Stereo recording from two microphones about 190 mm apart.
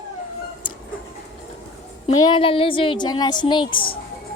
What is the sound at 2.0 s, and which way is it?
Speech, 30° left (ahead or behind).